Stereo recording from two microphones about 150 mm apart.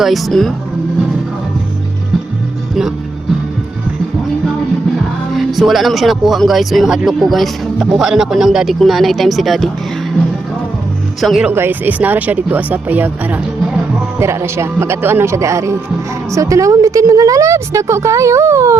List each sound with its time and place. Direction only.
0.0 s speech: centre (ahead or behind)
5.3 s speech: centre (ahead or behind)
11.2 s speech: centre (ahead or behind)
11.5 s a woman's voice: 15° right (ahead or behind)